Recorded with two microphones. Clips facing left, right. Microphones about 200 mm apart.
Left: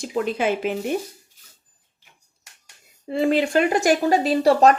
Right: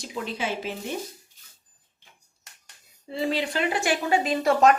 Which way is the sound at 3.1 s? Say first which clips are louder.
Left 7 dB; 55° left (ahead or behind).